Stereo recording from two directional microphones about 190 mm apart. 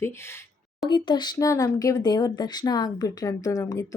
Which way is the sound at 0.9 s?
25° left (ahead or behind).